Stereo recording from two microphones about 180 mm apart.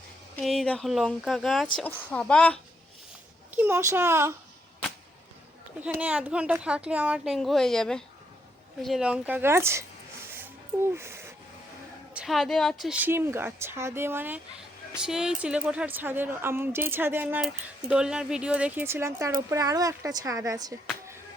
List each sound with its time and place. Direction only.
0.3 s speech: centre (ahead or behind)
3.5 s speech: 10° right (ahead or behind)
5.8 s speech: 10° right (ahead or behind)
10.9 s wheeze: 15° right (ahead or behind)
12.1 s speech: centre (ahead or behind); by 20.7 s 20° right (ahead or behind)